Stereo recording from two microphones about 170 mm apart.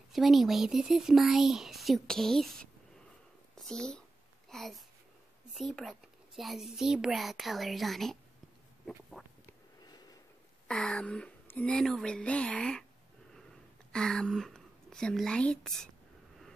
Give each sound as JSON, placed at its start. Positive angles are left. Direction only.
{"t": 0.1, "sound": "a child's voice", "side_deg": 0}
{"t": 9.8, "sound": "a sound", "side_deg": 25}
{"t": 10.7, "sound": "a child's voice", "side_deg": 5}
{"t": 13.9, "sound": "speech", "side_deg": 5}